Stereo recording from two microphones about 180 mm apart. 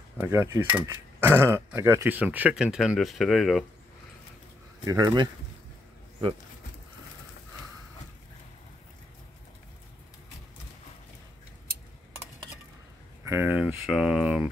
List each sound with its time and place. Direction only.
0.2 s speech: 15° right (ahead or behind); by 3.6 s centre (ahead or behind)
4.8 s speech: 20° right (ahead or behind)
13.2 s speech: 15° right (ahead or behind)